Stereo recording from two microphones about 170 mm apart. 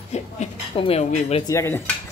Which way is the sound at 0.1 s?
35° left (ahead or behind).